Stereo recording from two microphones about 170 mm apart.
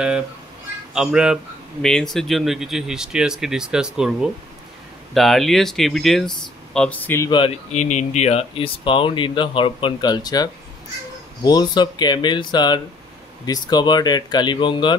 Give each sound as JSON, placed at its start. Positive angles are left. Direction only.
{"t": 0.9, "sound": "speech", "side_deg": -5}
{"t": 7.2, "sound": "speech", "side_deg": 30}
{"t": 7.7, "sound": "speech", "side_deg": 45}